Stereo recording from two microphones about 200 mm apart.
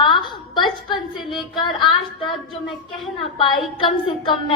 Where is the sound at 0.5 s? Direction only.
20° left (ahead or behind).